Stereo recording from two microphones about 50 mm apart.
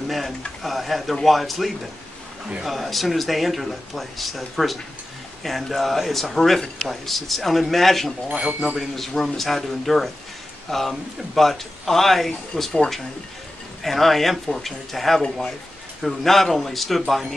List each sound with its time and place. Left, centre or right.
0.6 s speech: centre
8.3 s speech: right
8.7 s speech: centre